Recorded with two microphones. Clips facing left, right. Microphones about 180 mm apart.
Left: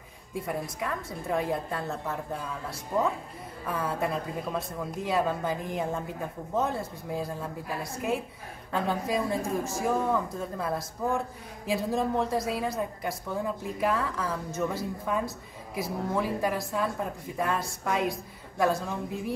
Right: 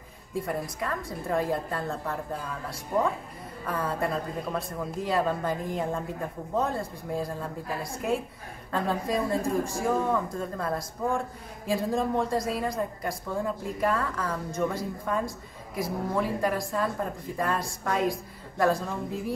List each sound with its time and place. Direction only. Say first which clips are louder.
0.5 s speech: left 1 dB; 5° left (ahead or behind)
3.6 s speech: right 1 dB; 5° left (ahead or behind)